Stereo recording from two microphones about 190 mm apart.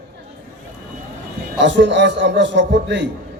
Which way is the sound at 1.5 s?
65° right (ahead or behind).